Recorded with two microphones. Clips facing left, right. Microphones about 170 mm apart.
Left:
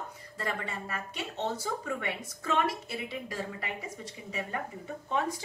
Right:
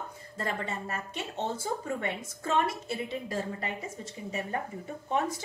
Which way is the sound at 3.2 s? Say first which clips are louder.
Right 3 dB; 45° right (ahead or behind).